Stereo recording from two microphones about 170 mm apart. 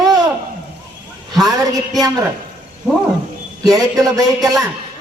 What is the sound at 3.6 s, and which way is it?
Speech, 20° right (ahead or behind).